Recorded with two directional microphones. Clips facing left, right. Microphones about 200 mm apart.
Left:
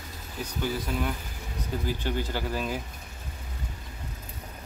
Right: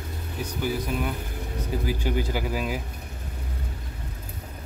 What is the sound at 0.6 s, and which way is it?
Speech, 15° right (ahead or behind).